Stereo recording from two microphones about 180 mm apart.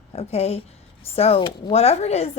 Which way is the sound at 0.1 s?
35° left (ahead or behind).